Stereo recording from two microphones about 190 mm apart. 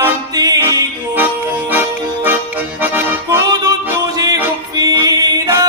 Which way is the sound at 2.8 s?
10° right (ahead or behind).